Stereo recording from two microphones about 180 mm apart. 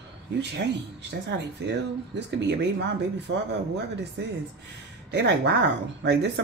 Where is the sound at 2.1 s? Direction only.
70° right (ahead or behind).